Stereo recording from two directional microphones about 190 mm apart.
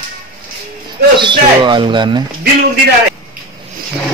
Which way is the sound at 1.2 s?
25° right (ahead or behind).